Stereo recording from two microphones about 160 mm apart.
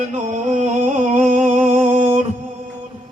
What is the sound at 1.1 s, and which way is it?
Music, 50° right (ahead or behind).